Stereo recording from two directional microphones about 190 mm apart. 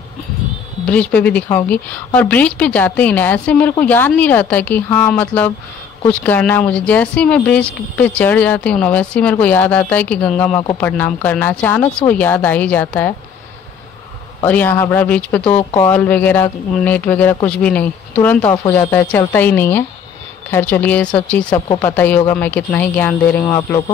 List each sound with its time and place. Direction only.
0.8 s a woman's voice: 5° left (ahead or behind)
14.4 s a woman's voice: 10° left (ahead or behind)
21.5 s speech: 20° left (ahead or behind)
21.8 s a woman's voice: 10° left (ahead or behind)